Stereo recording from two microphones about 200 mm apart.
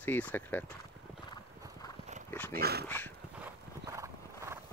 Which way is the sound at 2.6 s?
50° right (ahead or behind).